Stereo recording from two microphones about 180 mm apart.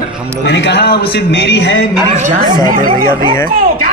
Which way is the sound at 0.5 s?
70° left (ahead or behind).